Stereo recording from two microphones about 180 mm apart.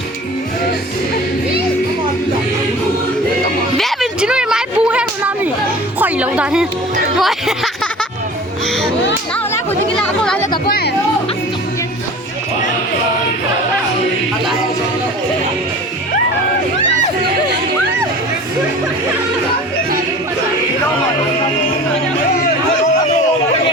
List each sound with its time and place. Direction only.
3.8 s a sound: centre (ahead or behind)
6.0 s music: 10° right (ahead or behind)
10.2 s chatter: 10° left (ahead or behind)
10.7 s chatter: 60° left (ahead or behind)